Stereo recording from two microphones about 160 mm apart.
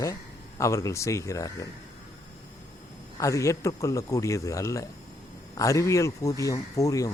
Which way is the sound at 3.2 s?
20° left (ahead or behind).